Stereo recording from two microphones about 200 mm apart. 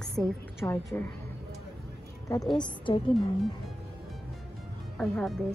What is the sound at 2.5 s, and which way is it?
Speech, 25° left (ahead or behind).